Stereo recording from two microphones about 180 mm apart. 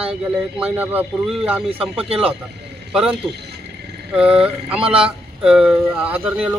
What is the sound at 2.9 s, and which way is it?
A man's voice, 5° right (ahead or behind).